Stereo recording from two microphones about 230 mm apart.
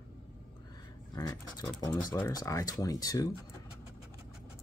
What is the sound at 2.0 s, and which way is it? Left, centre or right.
Speech, centre.